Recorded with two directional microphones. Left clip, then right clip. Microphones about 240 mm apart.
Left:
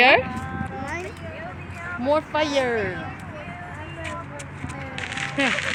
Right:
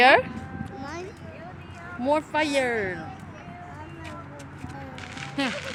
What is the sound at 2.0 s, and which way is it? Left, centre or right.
Speech, right.